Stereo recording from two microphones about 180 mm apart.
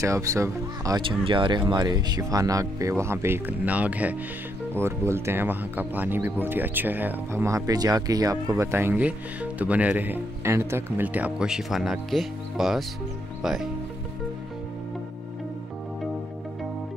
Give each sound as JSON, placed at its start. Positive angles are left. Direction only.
{"t": 0.0, "sound": "speech", "side_deg": -15}